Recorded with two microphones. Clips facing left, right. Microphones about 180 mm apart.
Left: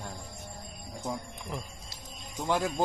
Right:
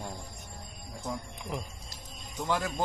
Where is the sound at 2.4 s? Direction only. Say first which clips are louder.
Left 2 dB; 15° left (ahead or behind).